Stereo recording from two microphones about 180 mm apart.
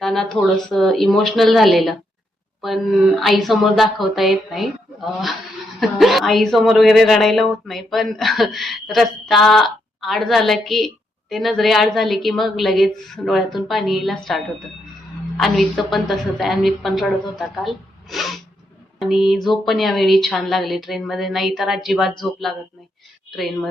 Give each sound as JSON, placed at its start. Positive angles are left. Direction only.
{"t": 0.0, "sound": "a woman's voice", "side_deg": 0}
{"t": 5.8, "sound": "a woman's voice", "side_deg": 0}
{"t": 18.9, "sound": "a sound", "side_deg": 0}
{"t": 19.3, "sound": "a woman's voice", "side_deg": 0}